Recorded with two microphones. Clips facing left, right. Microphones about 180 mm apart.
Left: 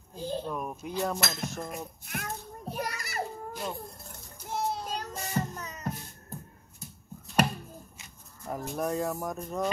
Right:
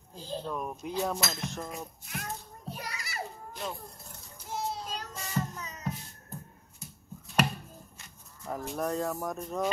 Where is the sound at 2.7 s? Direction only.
50° left (ahead or behind).